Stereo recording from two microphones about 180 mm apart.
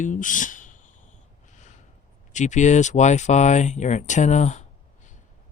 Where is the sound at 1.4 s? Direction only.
40° left (ahead or behind).